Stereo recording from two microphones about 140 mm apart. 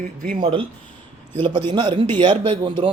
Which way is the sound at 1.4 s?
35° right (ahead or behind).